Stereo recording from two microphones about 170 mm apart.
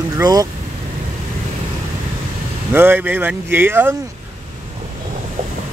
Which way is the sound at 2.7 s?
10° right (ahead or behind).